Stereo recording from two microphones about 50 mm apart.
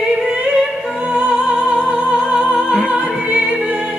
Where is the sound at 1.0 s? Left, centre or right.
Right.